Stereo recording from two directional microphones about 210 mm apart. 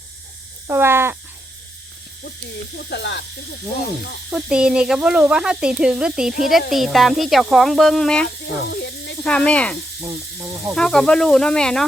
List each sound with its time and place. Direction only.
0.7 s crow: 10° right (ahead or behind)
2.9 s speech: 55° left (ahead or behind)
4.3 s speech: 5° right (ahead or behind)
8.7 s snake: 55° left (ahead or behind)
9.2 s speech: 5° left (ahead or behind)
10.0 s speech: 15° right (ahead or behind)
10.8 s speech: 5° left (ahead or behind)